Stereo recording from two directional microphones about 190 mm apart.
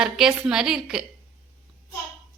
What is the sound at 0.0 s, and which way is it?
A woman's voice, 5° right (ahead or behind).